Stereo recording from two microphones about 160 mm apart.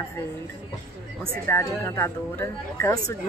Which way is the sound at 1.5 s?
15° left (ahead or behind).